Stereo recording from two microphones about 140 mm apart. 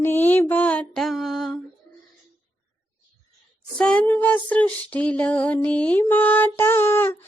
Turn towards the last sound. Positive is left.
turn(degrees=15)  # may be behind; listen again after turning